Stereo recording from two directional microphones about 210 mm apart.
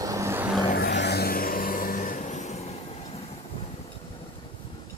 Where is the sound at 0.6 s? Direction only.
50° left (ahead or behind); by 2.7 s 35° left (ahead or behind).